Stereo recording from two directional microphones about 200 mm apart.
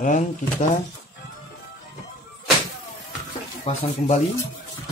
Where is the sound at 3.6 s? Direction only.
30° left (ahead or behind).